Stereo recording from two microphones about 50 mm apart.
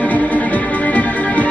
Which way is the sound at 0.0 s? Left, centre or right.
Left.